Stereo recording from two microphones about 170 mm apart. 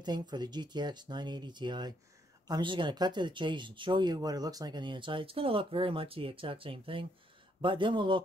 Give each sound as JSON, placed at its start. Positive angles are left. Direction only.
{"t": 0.0, "sound": "speech", "side_deg": -25}